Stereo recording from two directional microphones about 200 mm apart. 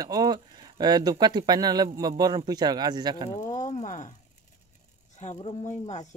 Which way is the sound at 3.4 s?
35° left (ahead or behind).